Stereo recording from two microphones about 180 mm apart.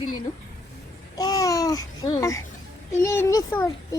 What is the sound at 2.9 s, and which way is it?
Speech, 15° left (ahead or behind).